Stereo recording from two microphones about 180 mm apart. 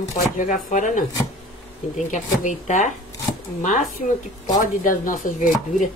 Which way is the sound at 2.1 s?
45° left (ahead or behind).